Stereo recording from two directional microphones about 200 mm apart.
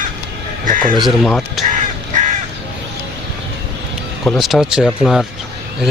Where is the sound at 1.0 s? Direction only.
5° left (ahead or behind).